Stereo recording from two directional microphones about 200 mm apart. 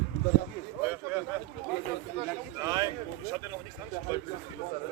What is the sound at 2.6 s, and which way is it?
Speech, 20° right (ahead or behind).